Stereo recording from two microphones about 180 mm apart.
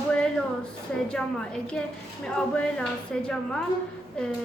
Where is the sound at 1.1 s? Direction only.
5° left (ahead or behind).